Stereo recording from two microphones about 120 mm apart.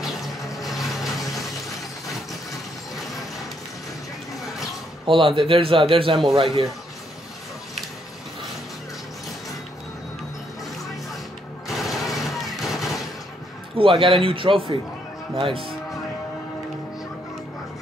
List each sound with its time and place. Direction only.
0.0 s vehicle: centre (ahead or behind)
5.0 s a man's voice: 45° right (ahead or behind)
11.7 s a sound: centre (ahead or behind)
13.7 s a man's voice: 45° right (ahead or behind)